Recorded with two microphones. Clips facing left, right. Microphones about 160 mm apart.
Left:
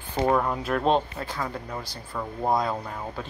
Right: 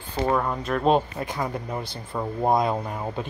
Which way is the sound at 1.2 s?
20° right (ahead or behind).